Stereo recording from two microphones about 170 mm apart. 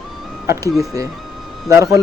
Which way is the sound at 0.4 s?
15° right (ahead or behind).